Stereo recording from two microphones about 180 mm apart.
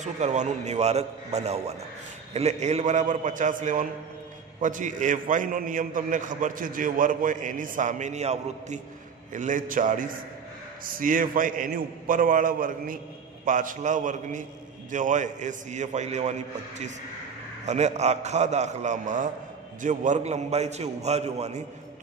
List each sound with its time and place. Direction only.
0.0 s a man's voice: 40° right (ahead or behind)